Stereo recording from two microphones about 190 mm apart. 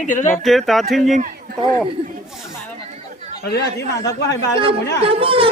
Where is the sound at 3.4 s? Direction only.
55° left (ahead or behind).